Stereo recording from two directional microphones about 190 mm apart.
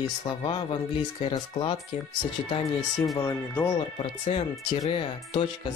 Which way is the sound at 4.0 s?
30° left (ahead or behind).